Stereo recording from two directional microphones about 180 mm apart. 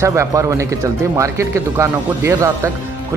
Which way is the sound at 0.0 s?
15° right (ahead or behind).